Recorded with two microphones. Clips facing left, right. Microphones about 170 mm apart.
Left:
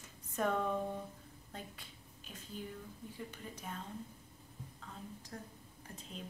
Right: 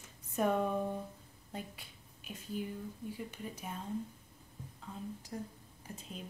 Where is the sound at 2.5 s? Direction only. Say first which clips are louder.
Right 6 dB; 10° right (ahead or behind).